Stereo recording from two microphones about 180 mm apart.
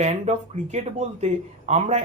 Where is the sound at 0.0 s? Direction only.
40° right (ahead or behind).